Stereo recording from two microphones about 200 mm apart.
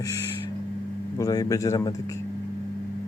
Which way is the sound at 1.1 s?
20° left (ahead or behind).